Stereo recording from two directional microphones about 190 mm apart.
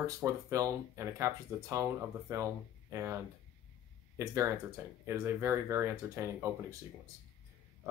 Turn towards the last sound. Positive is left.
turn(degrees=-15)  # may be behind; listen again after turning